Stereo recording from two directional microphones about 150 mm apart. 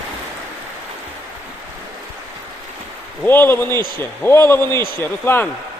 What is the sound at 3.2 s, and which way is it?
A man's voice, 15° left (ahead or behind).